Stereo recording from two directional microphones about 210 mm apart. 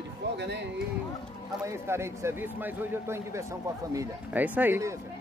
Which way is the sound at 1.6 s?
10° right (ahead or behind).